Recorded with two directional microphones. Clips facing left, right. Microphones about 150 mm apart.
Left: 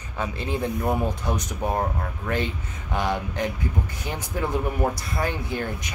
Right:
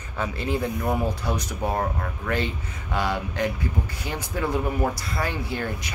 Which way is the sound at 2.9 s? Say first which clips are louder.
Even; 20° left (ahead or behind).